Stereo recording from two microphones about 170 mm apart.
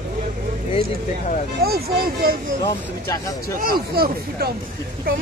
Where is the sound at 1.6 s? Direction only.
65° right (ahead or behind).